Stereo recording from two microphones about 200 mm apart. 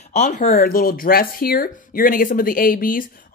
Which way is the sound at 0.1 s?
40° left (ahead or behind).